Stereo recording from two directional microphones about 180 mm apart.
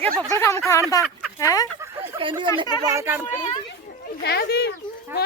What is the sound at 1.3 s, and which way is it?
Speech, 20° left (ahead or behind).